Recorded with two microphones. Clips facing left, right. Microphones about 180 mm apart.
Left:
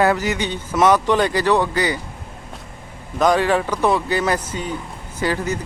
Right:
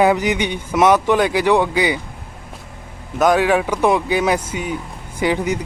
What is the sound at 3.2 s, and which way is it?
Speech, 5° right (ahead or behind).